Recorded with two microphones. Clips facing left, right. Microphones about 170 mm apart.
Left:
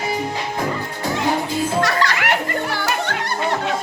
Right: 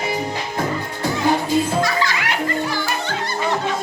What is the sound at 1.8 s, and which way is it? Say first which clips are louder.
Music: left 1 dB; 65° left (ahead or behind).